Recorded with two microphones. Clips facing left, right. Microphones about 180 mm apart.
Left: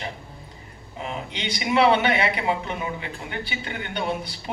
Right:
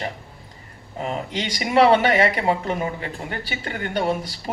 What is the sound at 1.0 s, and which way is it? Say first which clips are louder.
Speech: right 4 dB; 40° right (ahead or behind).